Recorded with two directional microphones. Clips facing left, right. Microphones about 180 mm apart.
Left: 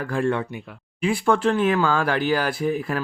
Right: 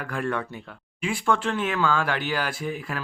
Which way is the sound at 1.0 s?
40° left (ahead or behind).